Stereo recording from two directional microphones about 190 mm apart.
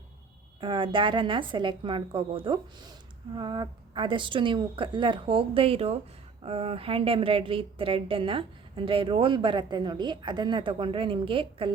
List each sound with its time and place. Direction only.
0.6 s speech: 25° right (ahead or behind)